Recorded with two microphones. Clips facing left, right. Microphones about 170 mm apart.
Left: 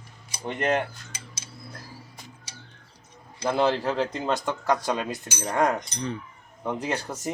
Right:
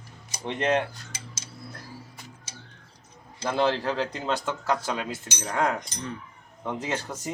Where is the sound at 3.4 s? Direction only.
15° left (ahead or behind).